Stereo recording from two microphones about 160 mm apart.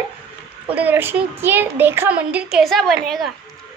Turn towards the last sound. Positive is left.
turn(degrees=0)  # may be behind; listen again after turning